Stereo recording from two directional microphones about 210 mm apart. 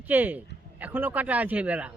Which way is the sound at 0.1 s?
10° right (ahead or behind).